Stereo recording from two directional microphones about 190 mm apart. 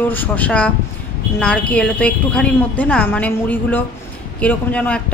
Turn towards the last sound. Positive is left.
turn(degrees=5)  # may be behind; listen again after turning